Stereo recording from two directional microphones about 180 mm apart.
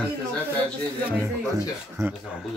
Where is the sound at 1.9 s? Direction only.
10° right (ahead or behind).